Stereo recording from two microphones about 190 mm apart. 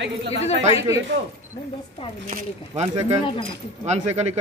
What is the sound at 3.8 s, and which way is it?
Speech, 35° right (ahead or behind).